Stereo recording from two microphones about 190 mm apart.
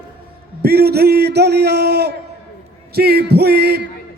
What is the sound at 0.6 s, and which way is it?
A man's voice, 55° right (ahead or behind).